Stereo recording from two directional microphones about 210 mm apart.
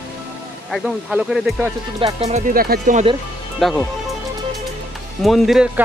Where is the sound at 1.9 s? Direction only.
30° right (ahead or behind).